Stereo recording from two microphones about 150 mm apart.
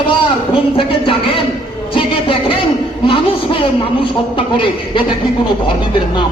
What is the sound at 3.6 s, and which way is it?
A man's voice, 35° left (ahead or behind).